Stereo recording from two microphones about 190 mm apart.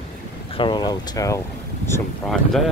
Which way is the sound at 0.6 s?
25° left (ahead or behind).